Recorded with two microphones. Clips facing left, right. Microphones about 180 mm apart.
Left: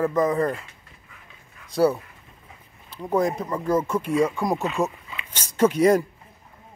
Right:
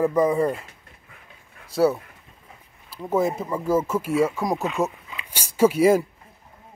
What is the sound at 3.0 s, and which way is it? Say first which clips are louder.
Speech: even; 5° right (ahead or behind).